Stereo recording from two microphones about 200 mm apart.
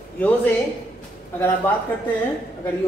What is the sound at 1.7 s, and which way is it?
Speech, 10° left (ahead or behind).